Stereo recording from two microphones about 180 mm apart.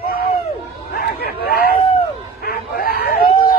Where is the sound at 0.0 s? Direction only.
55° left (ahead or behind).